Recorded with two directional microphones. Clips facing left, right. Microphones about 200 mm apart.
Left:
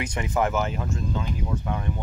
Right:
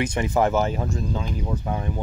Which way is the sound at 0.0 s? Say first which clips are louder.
Right 4 dB; 30° right (ahead or behind).